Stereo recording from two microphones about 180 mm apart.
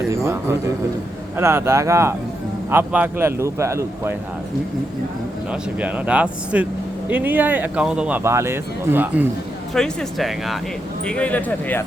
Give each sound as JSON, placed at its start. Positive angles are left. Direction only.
{"t": 0.1, "sound": "speech", "side_deg": -15}
{"t": 5.5, "sound": "speech", "side_deg": -5}
{"t": 9.7, "sound": "speech", "side_deg": 5}